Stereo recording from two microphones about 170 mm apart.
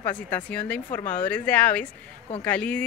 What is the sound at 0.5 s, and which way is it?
Speech, 10° left (ahead or behind).